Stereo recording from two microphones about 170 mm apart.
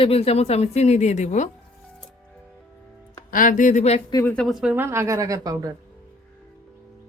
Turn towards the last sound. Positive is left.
turn(degrees=-20)  # may be behind; listen again after turning